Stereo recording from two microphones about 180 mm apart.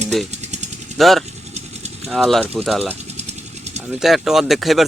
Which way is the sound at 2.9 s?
35° right (ahead or behind).